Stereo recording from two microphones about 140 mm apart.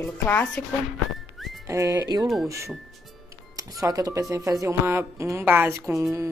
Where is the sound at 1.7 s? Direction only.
25° right (ahead or behind).